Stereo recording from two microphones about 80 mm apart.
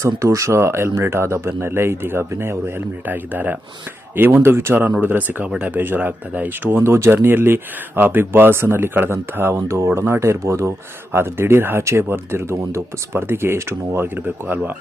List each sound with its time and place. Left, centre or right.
0.0 s speech: right